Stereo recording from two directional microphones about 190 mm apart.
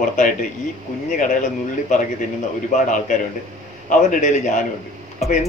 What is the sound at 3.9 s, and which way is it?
Speech, 40° left (ahead or behind).